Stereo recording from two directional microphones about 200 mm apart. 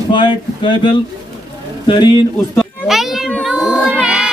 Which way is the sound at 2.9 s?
Centre (ahead or behind).